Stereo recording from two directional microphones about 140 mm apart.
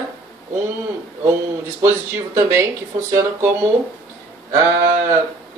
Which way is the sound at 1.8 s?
20° right (ahead or behind).